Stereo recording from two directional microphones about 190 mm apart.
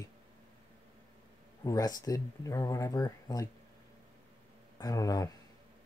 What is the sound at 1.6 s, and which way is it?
Speech, 20° left (ahead or behind).